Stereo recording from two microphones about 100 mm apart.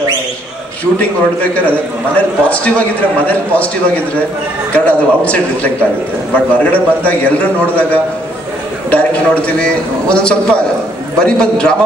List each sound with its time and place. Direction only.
0.9 s a man's voice: 15° left (ahead or behind)